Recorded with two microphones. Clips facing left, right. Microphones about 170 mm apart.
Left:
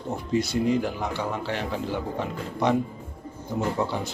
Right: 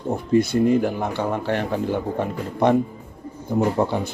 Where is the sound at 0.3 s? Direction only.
55° right (ahead or behind).